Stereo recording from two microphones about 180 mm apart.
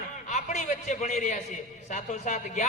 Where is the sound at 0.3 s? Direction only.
40° left (ahead or behind).